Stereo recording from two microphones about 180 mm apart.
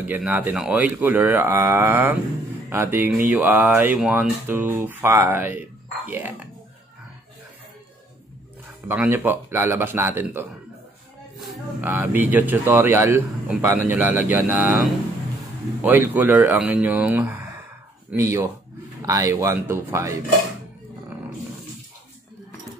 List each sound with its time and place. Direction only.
0.0 s speech: 10° right (ahead or behind)
8.8 s speech: 10° right (ahead or behind)
11.8 s speech: 10° right (ahead or behind)
15.8 s speech: 10° right (ahead or behind)